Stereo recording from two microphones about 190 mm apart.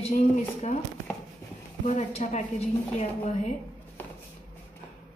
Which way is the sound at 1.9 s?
40° left (ahead or behind).